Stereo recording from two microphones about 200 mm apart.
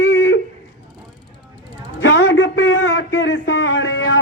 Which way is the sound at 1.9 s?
65° left (ahead or behind).